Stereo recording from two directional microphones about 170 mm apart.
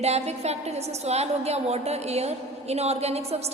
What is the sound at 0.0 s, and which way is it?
A woman's voice, 40° right (ahead or behind).